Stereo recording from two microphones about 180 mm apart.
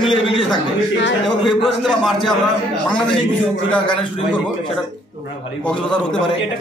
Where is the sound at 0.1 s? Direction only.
25° left (ahead or behind).